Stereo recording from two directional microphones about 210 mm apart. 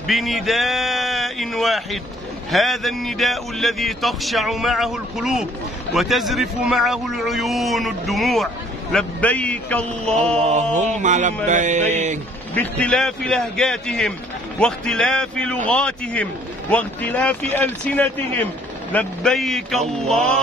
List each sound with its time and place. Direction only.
0.0 s a man's voice: centre (ahead or behind)
10.3 s a sound: 35° right (ahead or behind)
12.5 s a man's voice: 5° left (ahead or behind)